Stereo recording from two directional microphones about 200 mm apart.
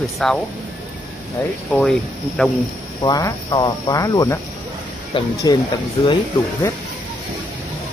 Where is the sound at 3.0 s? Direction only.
20° left (ahead or behind).